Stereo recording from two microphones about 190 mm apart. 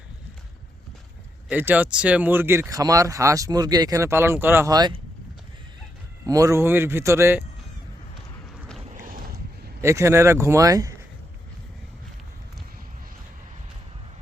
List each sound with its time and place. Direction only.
1.5 s speech: 10° right (ahead or behind)
6.2 s speech: 20° right (ahead or behind)
9.0 s boat: 45° right (ahead or behind)
9.8 s speech: 15° right (ahead or behind)